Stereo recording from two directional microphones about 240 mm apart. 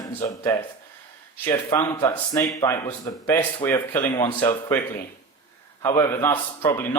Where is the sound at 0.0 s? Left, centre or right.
Centre.